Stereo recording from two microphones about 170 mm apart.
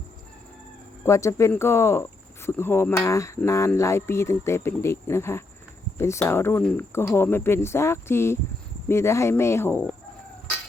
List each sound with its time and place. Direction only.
1.0 s speech: 15° left (ahead or behind)